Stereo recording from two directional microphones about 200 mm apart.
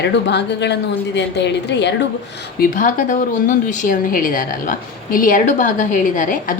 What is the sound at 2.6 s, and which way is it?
Speech, 40° left (ahead or behind).